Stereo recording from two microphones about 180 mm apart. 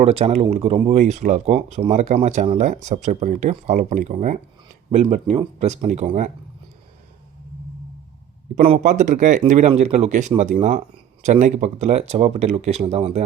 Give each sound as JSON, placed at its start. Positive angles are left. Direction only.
{"t": 0.0, "sound": "speech", "side_deg": -35}
{"t": 8.8, "sound": "speech", "side_deg": -45}